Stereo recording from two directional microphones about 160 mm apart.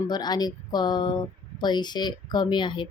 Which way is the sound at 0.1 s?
25° left (ahead or behind).